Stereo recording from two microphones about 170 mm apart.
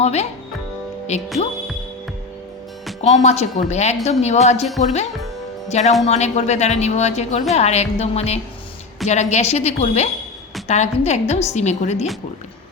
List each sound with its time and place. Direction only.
0.0 s a woman's voice: 40° left (ahead or behind)
3.0 s a woman's voice: 40° left (ahead or behind)